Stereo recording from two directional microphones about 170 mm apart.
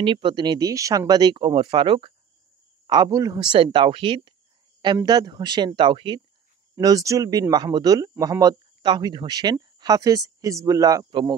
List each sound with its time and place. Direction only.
0.0 s speech: 30° right (ahead or behind)
3.5 s speech: 30° right (ahead or behind)